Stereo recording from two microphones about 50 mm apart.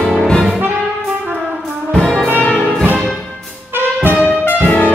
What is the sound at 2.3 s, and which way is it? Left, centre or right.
Music, left.